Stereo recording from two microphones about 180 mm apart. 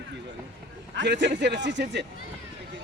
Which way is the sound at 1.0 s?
80° right.